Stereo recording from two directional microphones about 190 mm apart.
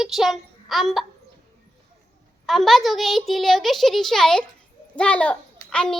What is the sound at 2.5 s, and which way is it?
A child's voice, centre (ahead or behind).